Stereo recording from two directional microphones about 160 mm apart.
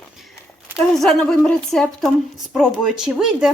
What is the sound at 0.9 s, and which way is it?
Speech, 5° left (ahead or behind).